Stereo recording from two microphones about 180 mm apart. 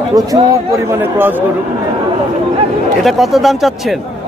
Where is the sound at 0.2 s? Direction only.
20° right (ahead or behind).